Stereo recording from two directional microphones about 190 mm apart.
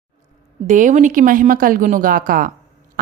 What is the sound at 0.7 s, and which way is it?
Speech, 40° right (ahead or behind).